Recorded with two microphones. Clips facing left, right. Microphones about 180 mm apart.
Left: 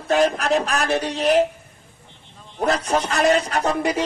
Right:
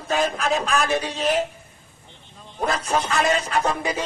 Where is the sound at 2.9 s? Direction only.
40° left (ahead or behind).